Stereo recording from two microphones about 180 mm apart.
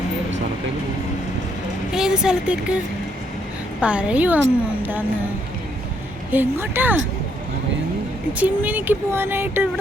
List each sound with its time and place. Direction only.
1.9 s a woman's voice: 5° right (ahead or behind)
6.3 s speech: 10° right (ahead or behind)
8.3 s speech: 10° right (ahead or behind)